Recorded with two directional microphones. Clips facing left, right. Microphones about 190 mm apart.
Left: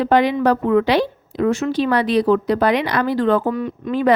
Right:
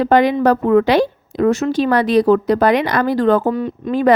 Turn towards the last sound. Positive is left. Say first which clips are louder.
# right 3 dB
turn(degrees=-30)  # may be behind; listen again after turning